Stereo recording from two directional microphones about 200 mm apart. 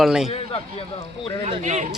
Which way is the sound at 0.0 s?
5° right (ahead or behind).